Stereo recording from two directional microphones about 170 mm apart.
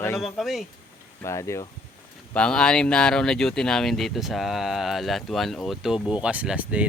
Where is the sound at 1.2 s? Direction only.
15° left (ahead or behind).